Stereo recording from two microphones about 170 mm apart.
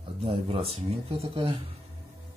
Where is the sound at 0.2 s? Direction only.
35° right (ahead or behind).